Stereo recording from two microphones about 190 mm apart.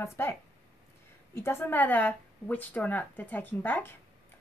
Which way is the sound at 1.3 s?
10° left (ahead or behind).